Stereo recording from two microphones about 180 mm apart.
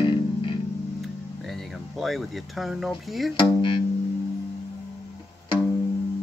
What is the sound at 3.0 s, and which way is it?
Speech, centre (ahead or behind).